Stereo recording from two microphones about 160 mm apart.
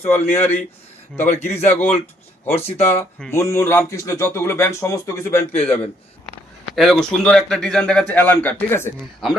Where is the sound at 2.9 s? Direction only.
15° left (ahead or behind).